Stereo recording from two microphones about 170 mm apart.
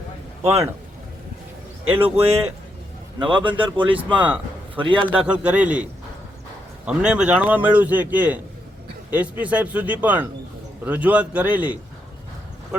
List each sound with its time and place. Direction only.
0.4 s a man's voice: 15° right (ahead or behind)
2.0 s a man's voice: 35° right (ahead or behind)
3.7 s a man's voice: 10° right (ahead or behind)
4.8 s a man's voice: 30° right (ahead or behind)
5.2 s a man's voice: 5° right (ahead or behind)
6.8 s a man's voice: 5° right (ahead or behind)